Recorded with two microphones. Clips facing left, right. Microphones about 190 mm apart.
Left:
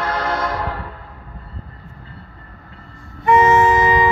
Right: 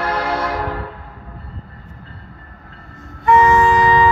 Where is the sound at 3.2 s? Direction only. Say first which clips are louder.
Even; 20° left (ahead or behind).